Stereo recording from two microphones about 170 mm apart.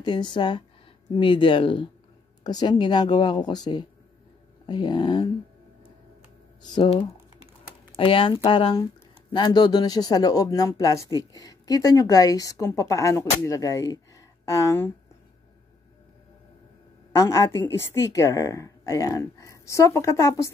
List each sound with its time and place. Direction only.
0.0 s speech: 25° left (ahead or behind)
6.6 s speech: 25° left (ahead or behind)
17.1 s a woman's voice: 15° left (ahead or behind)